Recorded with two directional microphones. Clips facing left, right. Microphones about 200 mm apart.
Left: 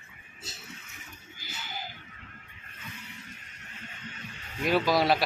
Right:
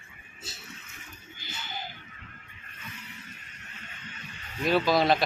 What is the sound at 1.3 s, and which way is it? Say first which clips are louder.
Music: right 1 dB; 10° left (ahead or behind).